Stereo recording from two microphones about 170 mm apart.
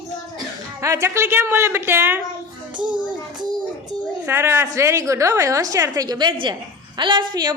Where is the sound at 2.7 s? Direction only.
25° right (ahead or behind).